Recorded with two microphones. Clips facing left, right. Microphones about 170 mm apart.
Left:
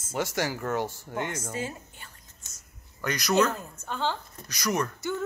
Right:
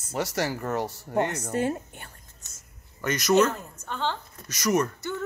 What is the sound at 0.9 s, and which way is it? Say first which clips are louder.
A woman's voice: right 6 dB; 70° right (ahead or behind).